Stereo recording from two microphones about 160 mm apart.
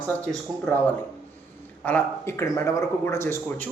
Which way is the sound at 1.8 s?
10° left (ahead or behind).